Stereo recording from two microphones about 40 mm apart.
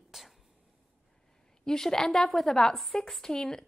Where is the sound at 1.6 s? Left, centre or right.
Centre.